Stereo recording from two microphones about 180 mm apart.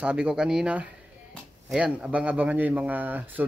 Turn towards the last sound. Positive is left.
turn(degrees=-10)  # may be behind; listen again after turning